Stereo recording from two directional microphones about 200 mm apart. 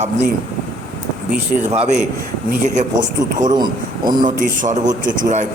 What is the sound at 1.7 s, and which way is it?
Speech, 30° right (ahead or behind).